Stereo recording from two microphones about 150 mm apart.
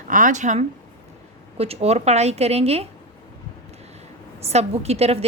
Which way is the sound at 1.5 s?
40° right (ahead or behind).